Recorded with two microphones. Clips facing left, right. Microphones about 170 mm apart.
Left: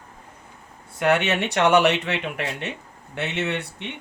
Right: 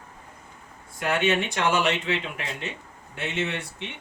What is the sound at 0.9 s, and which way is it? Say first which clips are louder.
Speech: left 3 dB; 70° left (ahead or behind).